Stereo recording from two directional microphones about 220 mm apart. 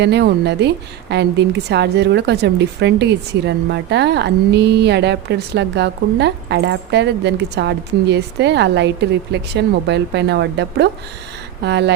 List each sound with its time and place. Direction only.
0.0 s a woman's voice: 50° right (ahead or behind)